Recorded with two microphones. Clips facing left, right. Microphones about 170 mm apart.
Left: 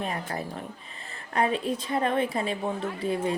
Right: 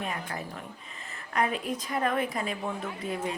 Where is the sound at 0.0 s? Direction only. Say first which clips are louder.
Left 3 dB; 35° left (ahead or behind).